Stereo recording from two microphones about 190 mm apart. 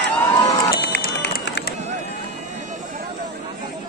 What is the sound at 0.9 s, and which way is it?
Run, 60° left (ahead or behind).